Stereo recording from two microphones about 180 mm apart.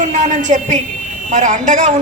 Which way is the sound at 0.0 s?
40° right (ahead or behind).